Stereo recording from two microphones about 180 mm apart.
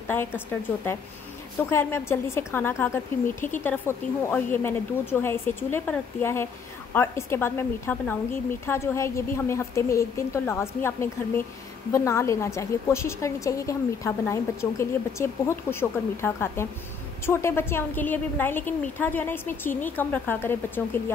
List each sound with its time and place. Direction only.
1.7 s a woman's voice: 15° left (ahead or behind)